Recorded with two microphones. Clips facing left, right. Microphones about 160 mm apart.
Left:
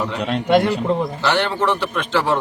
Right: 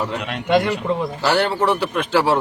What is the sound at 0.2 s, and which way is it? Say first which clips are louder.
Speech: left 3 dB; 35° left (ahead or behind).